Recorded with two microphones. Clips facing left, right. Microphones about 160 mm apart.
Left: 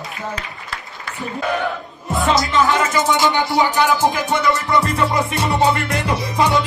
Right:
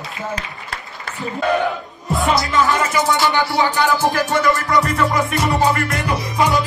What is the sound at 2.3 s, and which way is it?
Music, 20° left (ahead or behind).